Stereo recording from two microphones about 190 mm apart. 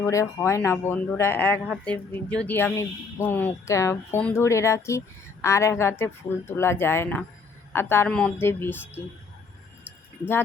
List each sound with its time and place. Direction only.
0.0 s speech: 15° left (ahead or behind)